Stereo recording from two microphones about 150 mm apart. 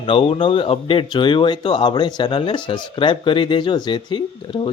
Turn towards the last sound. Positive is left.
turn(degrees=30)  # may be behind; listen again after turning